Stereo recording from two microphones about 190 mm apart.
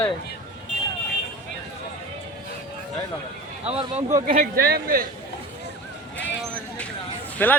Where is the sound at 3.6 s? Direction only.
30° right (ahead or behind); by 5.1 s 50° right (ahead or behind).